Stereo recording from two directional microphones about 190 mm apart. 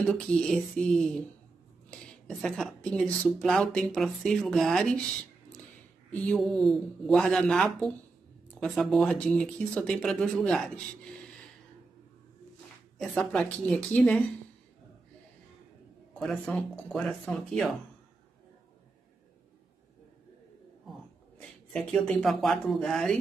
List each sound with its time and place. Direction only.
0.0 s speech: 5° left (ahead or behind)
6.1 s speech: 5° left (ahead or behind)
13.1 s speech: 5° left (ahead or behind)
16.2 s speech: centre (ahead or behind)
21.7 s speech: 5° left (ahead or behind)